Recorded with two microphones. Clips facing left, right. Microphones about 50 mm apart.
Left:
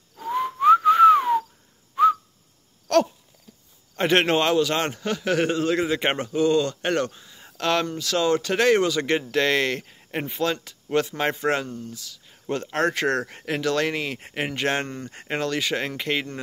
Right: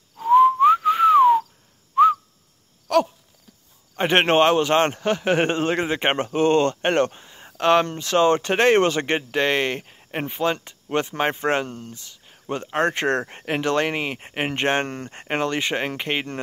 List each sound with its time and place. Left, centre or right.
0.3 s whistling: centre
2.9 s a sound: centre
3.9 s a man's voice: right
7.4 s a sound: right
8.0 s a man's voice: right
9.3 s speech: right
12.4 s a man's voice: centre